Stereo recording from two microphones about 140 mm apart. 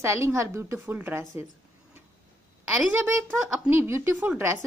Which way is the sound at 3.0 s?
15° right (ahead or behind).